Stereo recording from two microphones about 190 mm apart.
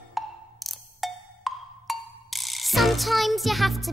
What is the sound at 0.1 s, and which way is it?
Music, centre (ahead or behind).